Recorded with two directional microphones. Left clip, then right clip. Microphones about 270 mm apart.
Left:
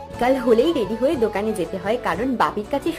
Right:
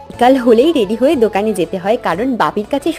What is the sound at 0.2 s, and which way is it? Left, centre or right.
A woman's voice, right.